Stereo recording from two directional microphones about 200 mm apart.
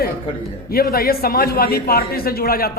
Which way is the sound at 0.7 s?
50° left (ahead or behind).